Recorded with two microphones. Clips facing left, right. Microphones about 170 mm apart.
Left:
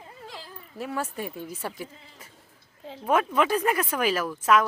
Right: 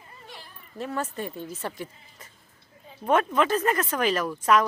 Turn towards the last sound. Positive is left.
turn(degrees=0)  # may be behind; listen again after turning